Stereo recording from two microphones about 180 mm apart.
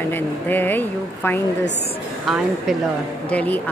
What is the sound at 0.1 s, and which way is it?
Speech, 10° left (ahead or behind).